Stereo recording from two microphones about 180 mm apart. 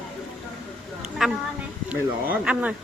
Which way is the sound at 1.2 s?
Centre (ahead or behind).